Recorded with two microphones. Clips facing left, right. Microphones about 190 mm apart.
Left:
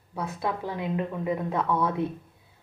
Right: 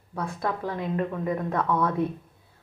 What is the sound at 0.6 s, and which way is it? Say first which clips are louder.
Speech: right 1 dB; 10° left (ahead or behind).